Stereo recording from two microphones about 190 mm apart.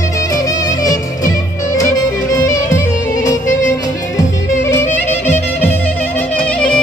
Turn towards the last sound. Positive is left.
turn(degrees=5)  # may be behind; listen again after turning